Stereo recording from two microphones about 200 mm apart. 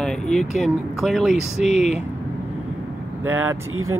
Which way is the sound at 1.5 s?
35° left (ahead or behind).